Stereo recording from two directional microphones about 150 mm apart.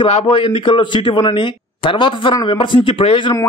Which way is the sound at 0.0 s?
40° left (ahead or behind).